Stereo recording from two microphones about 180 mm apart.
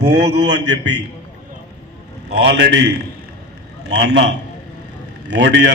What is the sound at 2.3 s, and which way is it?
A man's voice, 70° right (ahead or behind).